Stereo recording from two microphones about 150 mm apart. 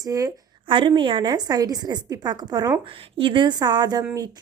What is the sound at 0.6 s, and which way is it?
A woman's voice, 35° right (ahead or behind).